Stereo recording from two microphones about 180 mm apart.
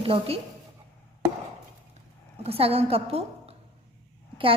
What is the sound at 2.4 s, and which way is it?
A woman's voice, 35° right (ahead or behind).